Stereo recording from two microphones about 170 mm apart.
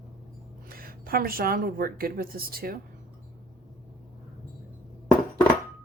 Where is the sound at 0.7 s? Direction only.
60° right (ahead or behind).